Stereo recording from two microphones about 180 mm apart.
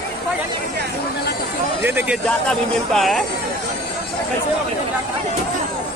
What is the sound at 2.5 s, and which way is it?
Speech, centre (ahead or behind).